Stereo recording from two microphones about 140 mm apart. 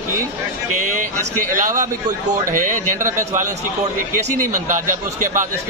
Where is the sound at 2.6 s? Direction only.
70° right (ahead or behind).